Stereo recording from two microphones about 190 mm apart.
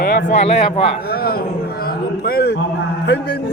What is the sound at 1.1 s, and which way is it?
A man's voice, 55° left (ahead or behind).